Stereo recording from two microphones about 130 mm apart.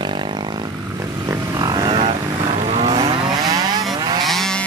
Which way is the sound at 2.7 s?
50° right (ahead or behind).